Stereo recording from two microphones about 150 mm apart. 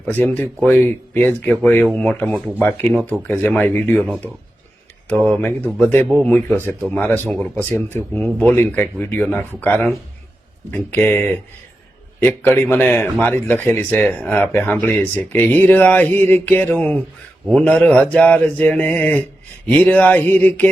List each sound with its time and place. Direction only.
0.0 s speech: 15° left (ahead or behind)